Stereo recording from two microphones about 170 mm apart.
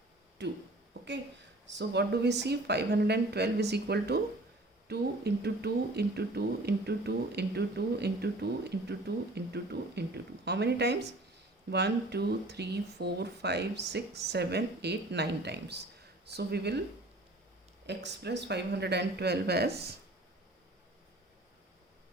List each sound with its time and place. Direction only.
0.4 s speech: 85° right
1.7 s speech: 90° right; by 16.8 s 75° right (ahead or behind)
17.8 s speech: 85° right